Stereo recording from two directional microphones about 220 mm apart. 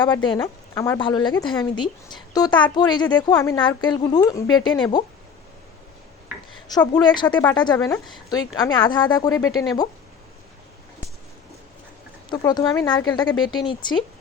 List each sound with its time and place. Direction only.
0.1 s speech: 20° left (ahead or behind)
6.7 s speech: 20° left (ahead or behind)
12.3 s speech: 15° left (ahead or behind)